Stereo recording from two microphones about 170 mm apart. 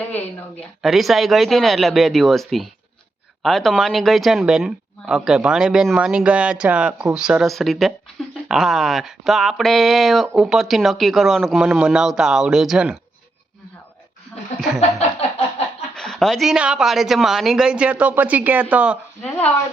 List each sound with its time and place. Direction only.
0.1 s speech: 10° left (ahead or behind)
0.8 s speech: centre (ahead or behind)
14.8 s a sound: 40° left (ahead or behind)
16.0 s speech: centre (ahead or behind)